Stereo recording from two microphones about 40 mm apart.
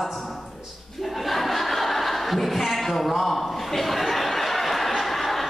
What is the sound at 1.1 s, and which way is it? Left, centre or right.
Chuckle, centre.